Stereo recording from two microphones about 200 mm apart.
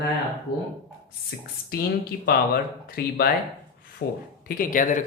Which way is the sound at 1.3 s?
55° left (ahead or behind).